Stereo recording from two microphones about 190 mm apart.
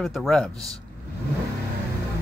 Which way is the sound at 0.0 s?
Centre (ahead or behind).